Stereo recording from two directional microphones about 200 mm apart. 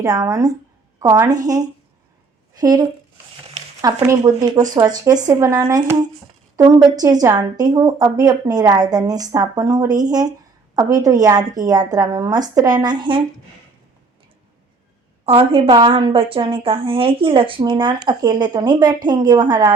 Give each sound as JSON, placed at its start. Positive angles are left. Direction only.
{"t": 0.0, "sound": "a woman's voice", "side_deg": -15}
{"t": 15.3, "sound": "a woman's voice", "side_deg": -30}